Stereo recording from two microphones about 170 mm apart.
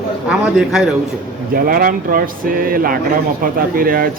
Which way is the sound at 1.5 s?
60° right (ahead or behind).